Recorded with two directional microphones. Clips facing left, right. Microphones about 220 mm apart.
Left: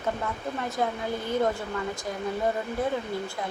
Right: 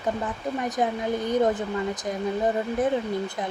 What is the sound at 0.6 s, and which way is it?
Speech, 15° right (ahead or behind).